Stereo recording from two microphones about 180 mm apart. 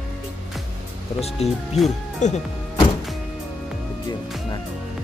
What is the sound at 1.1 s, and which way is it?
Speech, 35° left (ahead or behind).